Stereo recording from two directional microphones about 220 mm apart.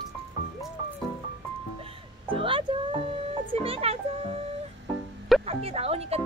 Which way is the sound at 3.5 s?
25° right (ahead or behind).